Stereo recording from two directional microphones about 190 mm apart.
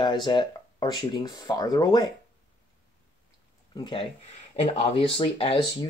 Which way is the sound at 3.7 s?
25° left (ahead or behind).